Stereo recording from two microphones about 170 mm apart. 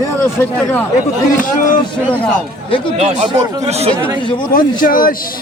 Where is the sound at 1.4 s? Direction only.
50° left (ahead or behind).